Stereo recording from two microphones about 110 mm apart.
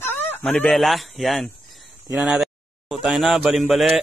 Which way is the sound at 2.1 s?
5° right (ahead or behind).